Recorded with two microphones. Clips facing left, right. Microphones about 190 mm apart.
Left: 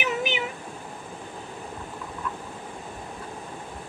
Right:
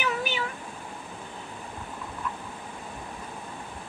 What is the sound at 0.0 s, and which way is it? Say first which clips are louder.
Cat: left 2 dB; 20° left (ahead or behind).